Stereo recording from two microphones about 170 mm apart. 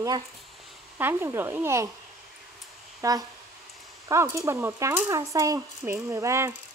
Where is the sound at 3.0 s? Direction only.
20° right (ahead or behind).